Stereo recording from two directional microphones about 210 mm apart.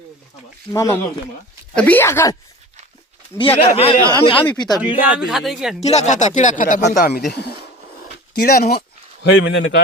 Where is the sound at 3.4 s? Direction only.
25° left (ahead or behind).